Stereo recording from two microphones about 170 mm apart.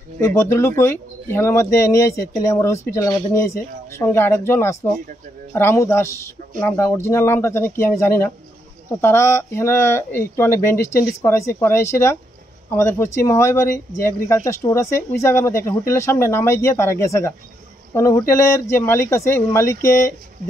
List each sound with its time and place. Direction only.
0.2 s speech: 15° left (ahead or behind)